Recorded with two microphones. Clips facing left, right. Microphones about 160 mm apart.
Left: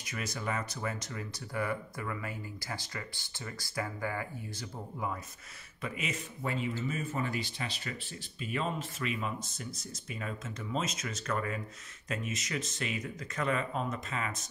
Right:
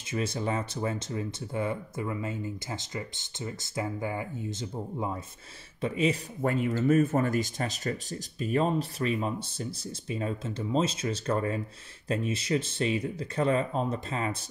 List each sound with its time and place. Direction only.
0.1 s speech: 30° right (ahead or behind)
6.4 s speech: 50° right (ahead or behind); by 14.4 s 30° right (ahead or behind)